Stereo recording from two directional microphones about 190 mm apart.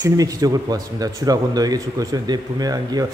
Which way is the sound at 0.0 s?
20° right (ahead or behind).